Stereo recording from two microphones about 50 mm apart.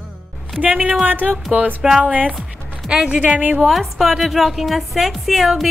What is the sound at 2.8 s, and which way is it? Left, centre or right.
Speech, centre.